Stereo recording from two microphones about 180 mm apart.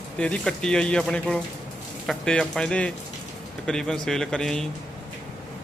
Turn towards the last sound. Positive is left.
turn(degrees=5)  # may be behind; listen again after turning